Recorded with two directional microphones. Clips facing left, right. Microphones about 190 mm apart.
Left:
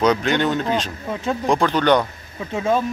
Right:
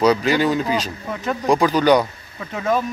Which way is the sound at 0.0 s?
5° right (ahead or behind).